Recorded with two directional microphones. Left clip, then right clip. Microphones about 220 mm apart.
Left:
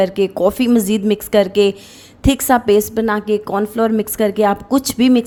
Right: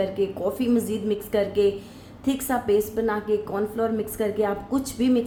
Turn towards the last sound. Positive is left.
turn(degrees=40)  # may be behind; listen again after turning